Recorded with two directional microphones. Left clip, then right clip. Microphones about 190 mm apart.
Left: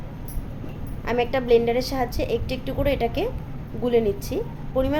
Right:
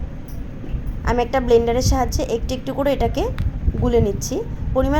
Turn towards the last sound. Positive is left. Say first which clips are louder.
# right 4 dB
turn(degrees=-15)  # may be behind; listen again after turning